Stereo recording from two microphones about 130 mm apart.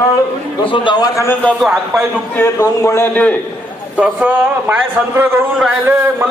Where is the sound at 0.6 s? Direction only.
40° left (ahead or behind); by 3.3 s 15° left (ahead or behind).